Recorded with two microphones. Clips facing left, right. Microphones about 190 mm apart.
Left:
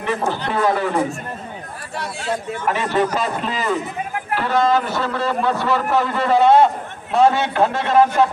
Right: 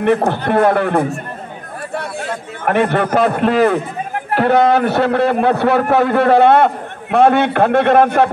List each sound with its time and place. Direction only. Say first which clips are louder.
0.3 s a man's voice: right 6 dB; 60° right (ahead or behind)